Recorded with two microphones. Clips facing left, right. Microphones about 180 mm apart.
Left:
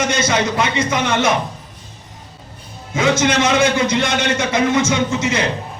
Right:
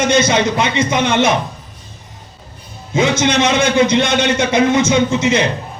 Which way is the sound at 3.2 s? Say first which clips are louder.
Right 1 dB; 20° right (ahead or behind).